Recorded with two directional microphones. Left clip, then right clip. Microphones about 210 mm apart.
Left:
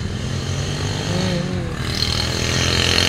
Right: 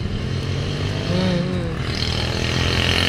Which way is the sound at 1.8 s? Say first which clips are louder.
Left 5 dB; 55° left (ahead or behind).